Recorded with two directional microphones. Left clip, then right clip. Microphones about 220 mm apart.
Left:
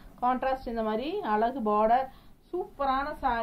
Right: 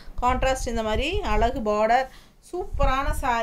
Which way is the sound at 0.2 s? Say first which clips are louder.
Right 5 dB; 30° right (ahead or behind).